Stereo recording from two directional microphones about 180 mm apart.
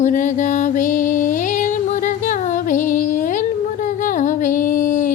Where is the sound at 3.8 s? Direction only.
45° left (ahead or behind).